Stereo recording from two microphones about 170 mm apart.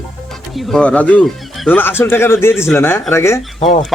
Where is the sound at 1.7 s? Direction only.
15° left (ahead or behind).